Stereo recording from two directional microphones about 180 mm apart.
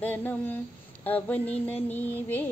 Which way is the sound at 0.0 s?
10° left (ahead or behind).